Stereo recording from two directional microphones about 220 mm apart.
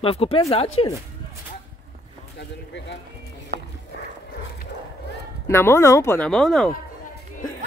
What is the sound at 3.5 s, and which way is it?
Music, 45° right (ahead or behind).